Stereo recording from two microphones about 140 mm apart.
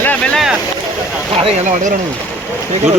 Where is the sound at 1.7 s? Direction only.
60° right (ahead or behind).